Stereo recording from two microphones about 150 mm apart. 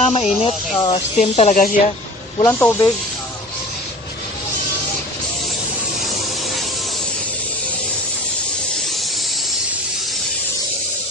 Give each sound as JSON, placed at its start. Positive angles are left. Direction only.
{"t": 0.0, "sound": "speech", "side_deg": 45}
{"t": 1.5, "sound": "speech", "side_deg": 65}
{"t": 2.4, "sound": "speech", "side_deg": 15}